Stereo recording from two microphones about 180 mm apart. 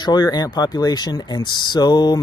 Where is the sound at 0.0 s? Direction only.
25° left (ahead or behind).